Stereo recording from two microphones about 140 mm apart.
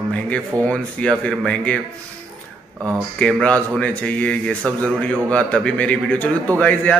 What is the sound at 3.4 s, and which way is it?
Speech, 10° left (ahead or behind).